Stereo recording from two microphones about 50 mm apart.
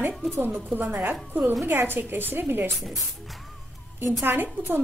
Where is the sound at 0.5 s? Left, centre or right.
Right.